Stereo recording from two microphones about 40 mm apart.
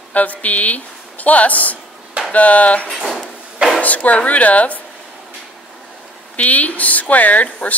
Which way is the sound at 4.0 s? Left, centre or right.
Left.